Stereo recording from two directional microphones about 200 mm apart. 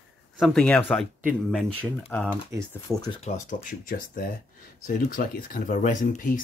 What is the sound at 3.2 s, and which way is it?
Speech, 35° left (ahead or behind).